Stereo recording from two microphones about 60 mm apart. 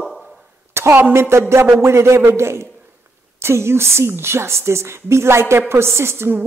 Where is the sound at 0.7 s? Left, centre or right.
Right.